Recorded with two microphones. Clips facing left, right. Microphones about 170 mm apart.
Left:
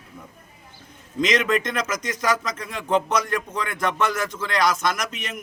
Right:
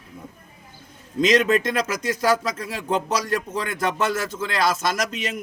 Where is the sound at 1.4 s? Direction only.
30° right (ahead or behind).